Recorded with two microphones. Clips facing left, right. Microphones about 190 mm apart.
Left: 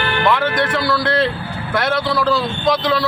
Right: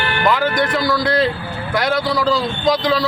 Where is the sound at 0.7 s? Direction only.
15° right (ahead or behind).